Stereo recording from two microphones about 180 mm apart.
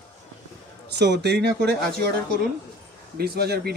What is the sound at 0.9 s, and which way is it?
Speech, 70° right (ahead or behind).